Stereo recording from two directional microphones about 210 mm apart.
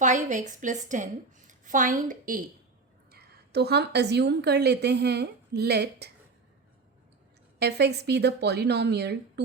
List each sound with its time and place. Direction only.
0.0 s a woman's voice: 35° right (ahead or behind)
3.1 s a woman's voice: 50° right (ahead or behind)
7.6 s speech: 50° right (ahead or behind)